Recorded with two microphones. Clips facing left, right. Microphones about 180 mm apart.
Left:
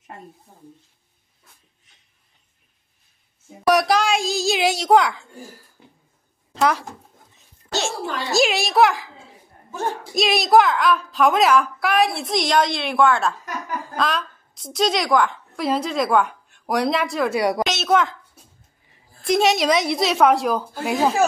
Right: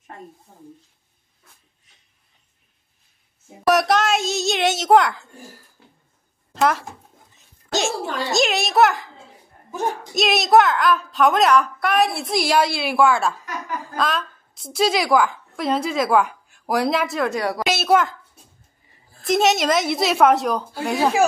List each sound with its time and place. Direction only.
3.6 s a woman's voice: centre (ahead or behind)
6.5 s speech: centre (ahead or behind)
7.7 s a woman's voice: 15° right (ahead or behind)
8.3 s a woman's voice: centre (ahead or behind)
10.1 s a woman's voice: centre (ahead or behind)
17.4 s a woman's voice: 15° left (ahead or behind)
17.6 s a woman's voice: 5° right (ahead or behind)